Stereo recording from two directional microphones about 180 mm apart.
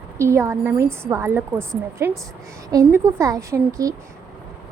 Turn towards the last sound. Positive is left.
turn(degrees=-20)  # may be behind; listen again after turning